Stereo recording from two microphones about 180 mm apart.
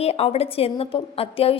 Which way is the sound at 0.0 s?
35° left (ahead or behind).